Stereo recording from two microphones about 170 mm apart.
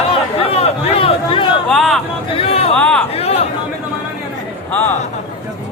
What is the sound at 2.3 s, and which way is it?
Speech, 35° left (ahead or behind).